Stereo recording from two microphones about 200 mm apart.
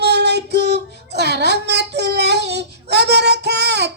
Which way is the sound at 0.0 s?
55° right (ahead or behind).